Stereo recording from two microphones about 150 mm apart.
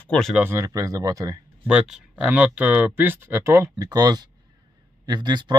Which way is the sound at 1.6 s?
5° right (ahead or behind).